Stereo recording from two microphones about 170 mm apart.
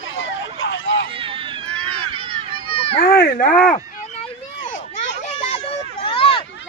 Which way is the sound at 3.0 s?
65° left (ahead or behind).